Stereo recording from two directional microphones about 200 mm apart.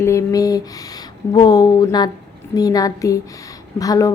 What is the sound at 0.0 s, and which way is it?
A woman's voice, 15° left (ahead or behind).